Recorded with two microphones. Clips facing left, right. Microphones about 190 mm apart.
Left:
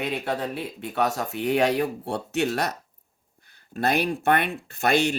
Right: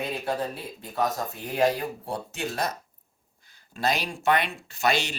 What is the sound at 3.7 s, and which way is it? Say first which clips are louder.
Speech: left 4 dB; 55° left (ahead or behind).